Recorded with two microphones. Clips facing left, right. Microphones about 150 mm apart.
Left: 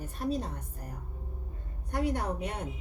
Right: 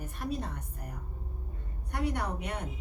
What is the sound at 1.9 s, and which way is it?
Speech, 35° left (ahead or behind).